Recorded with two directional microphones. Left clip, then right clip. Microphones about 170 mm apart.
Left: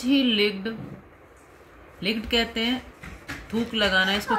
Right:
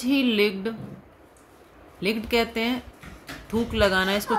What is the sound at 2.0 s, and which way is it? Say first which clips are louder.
Speech: right 1 dB; 60° right (ahead or behind).